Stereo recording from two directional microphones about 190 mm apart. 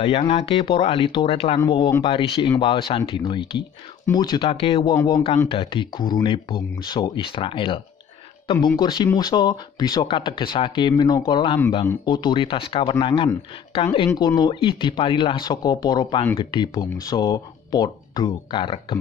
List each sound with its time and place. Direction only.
0.0 s speech: 30° left (ahead or behind)